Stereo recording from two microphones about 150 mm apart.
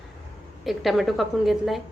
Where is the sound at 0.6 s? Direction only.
Centre (ahead or behind).